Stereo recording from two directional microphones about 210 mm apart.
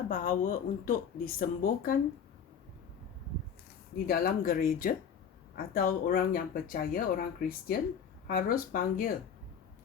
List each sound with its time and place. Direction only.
0.1 s speech: 40° left (ahead or behind)
4.0 s speech: 45° left (ahead or behind)